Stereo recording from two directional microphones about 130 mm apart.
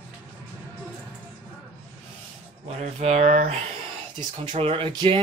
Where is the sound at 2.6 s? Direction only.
55° right (ahead or behind).